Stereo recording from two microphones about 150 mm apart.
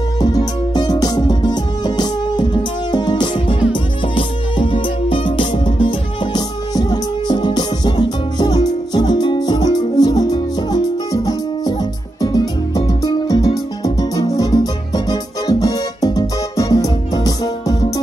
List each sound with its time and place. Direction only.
0.2 s music: 25° left (ahead or behind)
12.2 s music: 25° left (ahead or behind)